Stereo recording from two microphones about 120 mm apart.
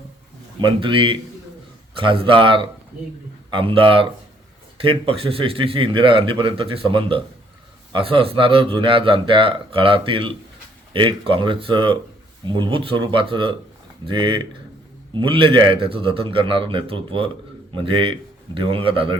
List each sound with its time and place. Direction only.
0.6 s a man's voice: 45° right (ahead or behind)